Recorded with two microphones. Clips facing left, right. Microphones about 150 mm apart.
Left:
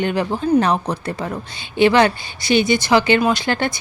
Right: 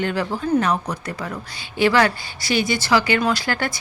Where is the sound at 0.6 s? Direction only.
30° left (ahead or behind).